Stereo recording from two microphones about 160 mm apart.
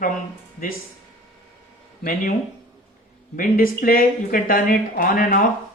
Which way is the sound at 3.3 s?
60° left (ahead or behind).